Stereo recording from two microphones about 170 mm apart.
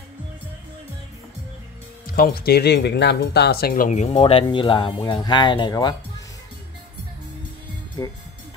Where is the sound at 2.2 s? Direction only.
65° left (ahead or behind); by 6.2 s 25° left (ahead or behind).